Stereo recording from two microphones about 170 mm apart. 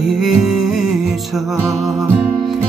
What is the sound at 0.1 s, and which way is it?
Music, centre (ahead or behind).